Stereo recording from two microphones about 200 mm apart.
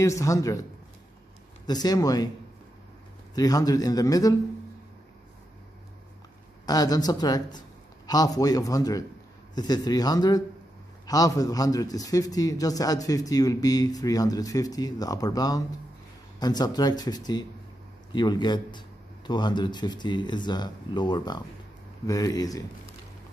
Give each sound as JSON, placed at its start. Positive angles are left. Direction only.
{"t": 0.0, "sound": "a man's voice", "side_deg": 15}
{"t": 1.7, "sound": "a man's voice", "side_deg": 20}
{"t": 3.3, "sound": "a man's voice", "side_deg": 20}
{"t": 6.6, "sound": "a man's voice", "side_deg": 20}